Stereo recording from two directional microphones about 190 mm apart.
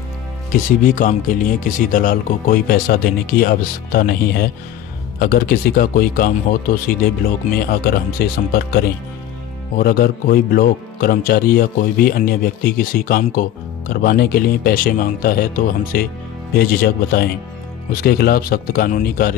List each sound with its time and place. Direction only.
0.5 s speech: 45° left (ahead or behind)